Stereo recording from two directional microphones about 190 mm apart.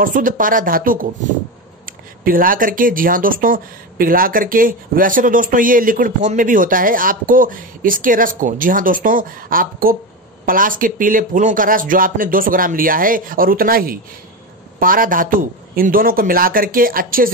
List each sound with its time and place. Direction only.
0.0 s speech: 45° right (ahead or behind)